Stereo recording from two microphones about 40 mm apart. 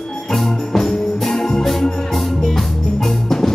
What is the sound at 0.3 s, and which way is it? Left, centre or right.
Music, centre.